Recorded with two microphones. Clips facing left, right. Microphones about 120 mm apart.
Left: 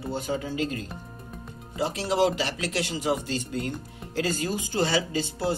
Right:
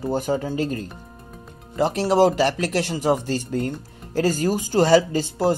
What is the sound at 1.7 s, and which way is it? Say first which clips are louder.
Speech: right 7 dB; 50° right (ahead or behind).